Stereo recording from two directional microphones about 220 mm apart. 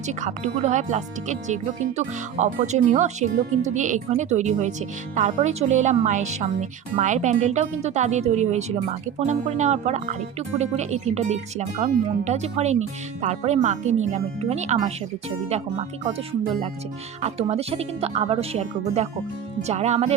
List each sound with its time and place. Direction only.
0.1 s speech: 30° right (ahead or behind)
17.2 s speech: 30° right (ahead or behind)